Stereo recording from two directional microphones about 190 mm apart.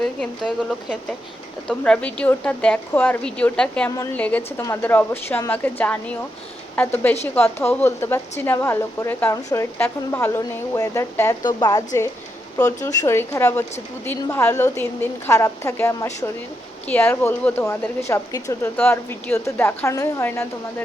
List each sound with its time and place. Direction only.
1.6 s a woman's voice: 5° left (ahead or behind)
3.9 s a woman's voice: 20° left (ahead or behind)
4.2 s a woman's voice: 5° left (ahead or behind)